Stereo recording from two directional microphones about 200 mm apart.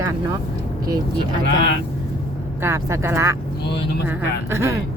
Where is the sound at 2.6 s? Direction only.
15° right (ahead or behind).